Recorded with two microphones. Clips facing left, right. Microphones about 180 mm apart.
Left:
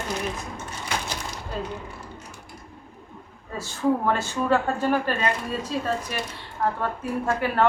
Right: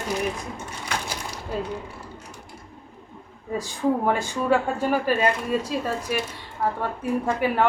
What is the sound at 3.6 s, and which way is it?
A woman's voice, 15° right (ahead or behind).